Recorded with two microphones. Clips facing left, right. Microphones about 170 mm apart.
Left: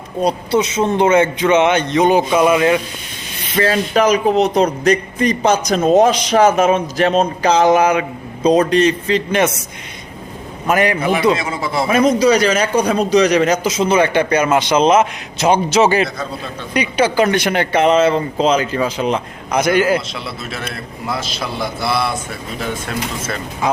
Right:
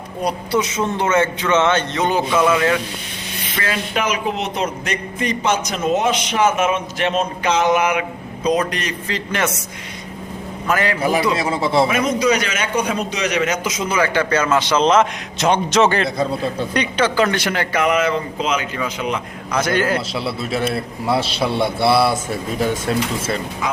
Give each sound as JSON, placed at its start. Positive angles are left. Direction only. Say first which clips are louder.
{"t": 0.2, "sound": "a man's voice", "louder": "left 4 dB", "side_deg": 25}
{"t": 3.5, "sound": "speech", "louder": "left 8 dB", "side_deg": 30}
{"t": 10.7, "sound": "speech", "louder": "left 4 dB", "side_deg": 20}
{"t": 11.3, "sound": "a man's voice", "louder": "right 3 dB", "side_deg": -30}
{"t": 11.9, "sound": "a man's voice", "louder": "left 5 dB", "side_deg": 35}
{"t": 16.0, "sound": "a man's voice", "louder": "right 6 dB", "side_deg": -30}
{"t": 16.7, "sound": "speech", "louder": "left 5 dB", "side_deg": 10}
{"t": 19.5, "sound": "a man's voice", "louder": "left 4 dB", "side_deg": 10}
{"t": 20.1, "sound": "a man's voice", "louder": "right 5 dB", "side_deg": -30}